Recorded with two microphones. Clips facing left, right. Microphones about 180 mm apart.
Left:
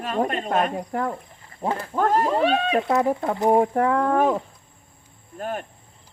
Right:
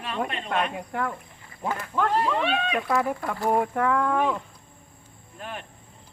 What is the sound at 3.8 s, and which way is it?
Speech, 35° left (ahead or behind).